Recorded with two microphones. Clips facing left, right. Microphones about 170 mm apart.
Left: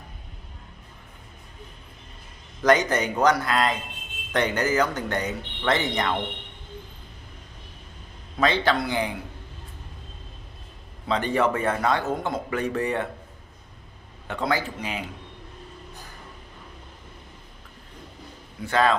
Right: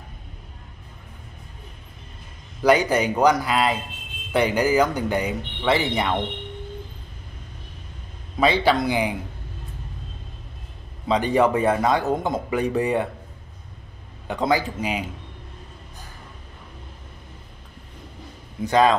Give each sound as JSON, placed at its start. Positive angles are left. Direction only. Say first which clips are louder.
{"t": 2.6, "sound": "speech", "louder": "right 2 dB", "side_deg": -10}
{"t": 8.4, "sound": "speech", "louder": "right 3 dB", "side_deg": -10}
{"t": 11.1, "sound": "speech", "louder": "right 4 dB", "side_deg": -15}
{"t": 14.2, "sound": "speech", "louder": "right 4 dB", "side_deg": -15}
{"t": 18.6, "sound": "speech", "louder": "right 4 dB", "side_deg": -15}